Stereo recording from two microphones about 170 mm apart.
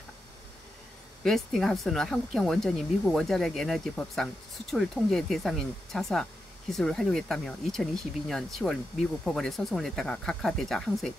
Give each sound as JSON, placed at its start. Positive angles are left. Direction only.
{"t": 1.2, "sound": "speech", "side_deg": 0}